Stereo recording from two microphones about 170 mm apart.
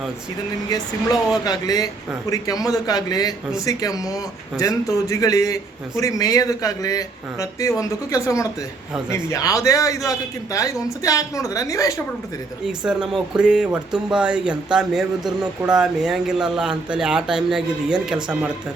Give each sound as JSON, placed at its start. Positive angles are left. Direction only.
{"t": 1.5, "sound": "a man's voice", "side_deg": 20}
{"t": 12.6, "sound": "speech", "side_deg": -5}